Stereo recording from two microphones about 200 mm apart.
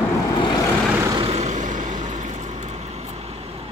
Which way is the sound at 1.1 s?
25° right (ahead or behind).